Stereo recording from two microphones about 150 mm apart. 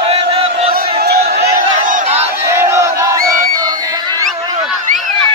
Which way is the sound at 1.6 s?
65° right (ahead or behind).